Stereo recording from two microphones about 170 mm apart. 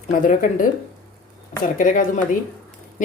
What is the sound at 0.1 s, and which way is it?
Speech, 50° left (ahead or behind).